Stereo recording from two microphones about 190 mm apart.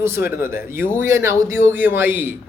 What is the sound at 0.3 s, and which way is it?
Speech, 10° right (ahead or behind).